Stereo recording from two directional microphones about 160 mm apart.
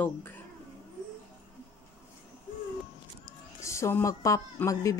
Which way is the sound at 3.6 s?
15° left (ahead or behind).